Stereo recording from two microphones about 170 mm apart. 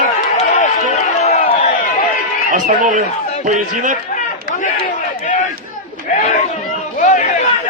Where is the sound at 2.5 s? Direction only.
50° right (ahead or behind).